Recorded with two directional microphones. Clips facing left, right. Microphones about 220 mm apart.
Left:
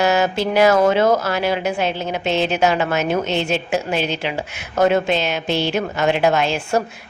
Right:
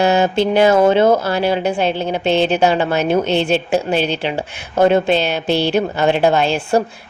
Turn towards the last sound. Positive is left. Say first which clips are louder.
# right 4 dB
turn(degrees=-30)  # may be behind; listen again after turning